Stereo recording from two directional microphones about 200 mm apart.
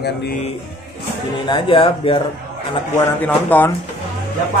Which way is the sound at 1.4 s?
25° left (ahead or behind).